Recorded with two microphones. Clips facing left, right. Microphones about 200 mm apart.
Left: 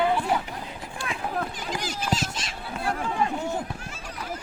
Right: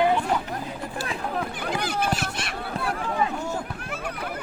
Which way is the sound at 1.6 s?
60° right (ahead or behind).